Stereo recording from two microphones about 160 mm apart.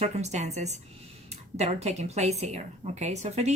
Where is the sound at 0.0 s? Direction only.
45° right (ahead or behind).